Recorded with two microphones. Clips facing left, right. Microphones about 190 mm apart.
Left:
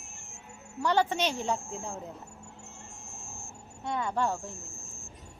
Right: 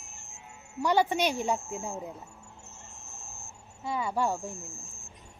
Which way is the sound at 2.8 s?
40° right (ahead or behind).